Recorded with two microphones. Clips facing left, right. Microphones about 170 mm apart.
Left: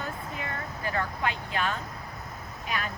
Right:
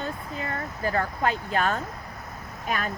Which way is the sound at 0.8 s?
40° right (ahead or behind).